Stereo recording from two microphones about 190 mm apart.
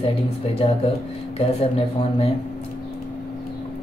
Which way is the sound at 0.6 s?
30° left (ahead or behind).